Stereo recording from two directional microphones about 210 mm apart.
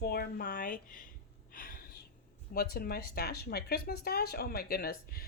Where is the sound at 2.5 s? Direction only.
45° left (ahead or behind).